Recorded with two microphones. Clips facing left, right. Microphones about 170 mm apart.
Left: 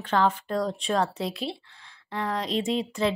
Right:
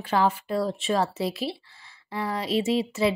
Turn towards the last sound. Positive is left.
turn(degrees=-5)  # may be behind; listen again after turning